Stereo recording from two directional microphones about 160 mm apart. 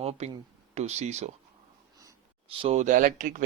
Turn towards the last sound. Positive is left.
turn(degrees=-55)  # may be behind; listen again after turning